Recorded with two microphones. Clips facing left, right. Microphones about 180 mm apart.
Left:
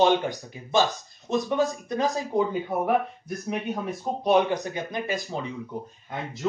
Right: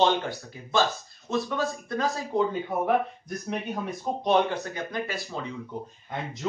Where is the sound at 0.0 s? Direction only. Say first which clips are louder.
Left 3 dB; 15° left (ahead or behind).